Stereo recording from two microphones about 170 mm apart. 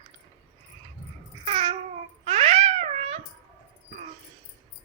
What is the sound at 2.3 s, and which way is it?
Cat, 35° right (ahead or behind).